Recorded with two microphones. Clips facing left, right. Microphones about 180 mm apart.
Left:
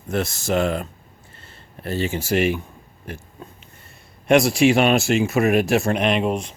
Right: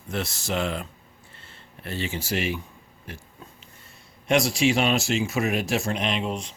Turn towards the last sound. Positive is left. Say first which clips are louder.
# left 7 dB
turn(degrees=55)  # may be behind; listen again after turning